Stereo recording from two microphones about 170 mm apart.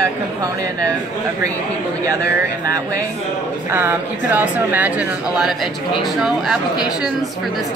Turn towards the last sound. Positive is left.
turn(degrees=-5)  # may be behind; listen again after turning